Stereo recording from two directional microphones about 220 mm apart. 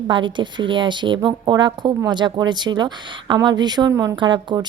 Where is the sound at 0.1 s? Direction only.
20° right (ahead or behind).